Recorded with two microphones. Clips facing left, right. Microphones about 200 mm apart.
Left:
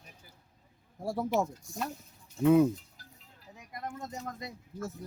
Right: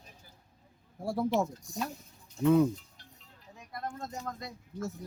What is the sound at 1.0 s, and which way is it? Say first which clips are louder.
Speech: right 2 dB; 5° left (ahead or behind).